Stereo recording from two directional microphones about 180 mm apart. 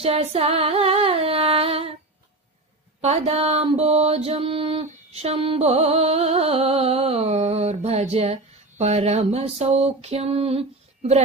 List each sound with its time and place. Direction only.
0.0 s mantra: 35° right (ahead or behind)
3.0 s mantra: 35° right (ahead or behind)